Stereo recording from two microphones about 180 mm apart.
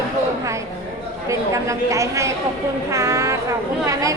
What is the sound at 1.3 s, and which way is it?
A woman's voice, 15° right (ahead or behind).